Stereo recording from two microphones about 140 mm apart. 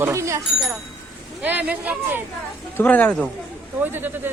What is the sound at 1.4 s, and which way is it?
Speech, 10° right (ahead or behind).